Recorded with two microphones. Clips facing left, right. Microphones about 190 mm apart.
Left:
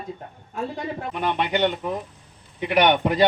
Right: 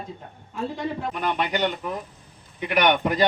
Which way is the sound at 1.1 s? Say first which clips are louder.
Left 5 dB; 20° left (ahead or behind).